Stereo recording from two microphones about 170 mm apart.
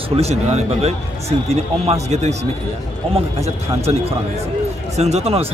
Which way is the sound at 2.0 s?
40° right (ahead or behind).